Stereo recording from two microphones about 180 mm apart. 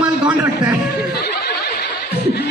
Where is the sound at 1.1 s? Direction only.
65° left (ahead or behind).